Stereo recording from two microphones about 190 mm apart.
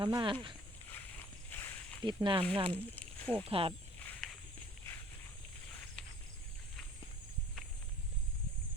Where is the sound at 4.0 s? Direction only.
5° left (ahead or behind).